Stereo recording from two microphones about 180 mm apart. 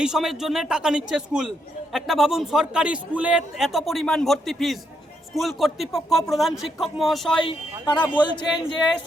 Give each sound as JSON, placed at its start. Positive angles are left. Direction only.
{"t": 0.0, "sound": "a man's voice", "side_deg": 0}
{"t": 7.3, "sound": "speech", "side_deg": 25}